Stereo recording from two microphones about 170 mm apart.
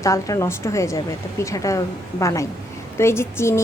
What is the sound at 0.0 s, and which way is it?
A woman's voice, 20° left (ahead or behind).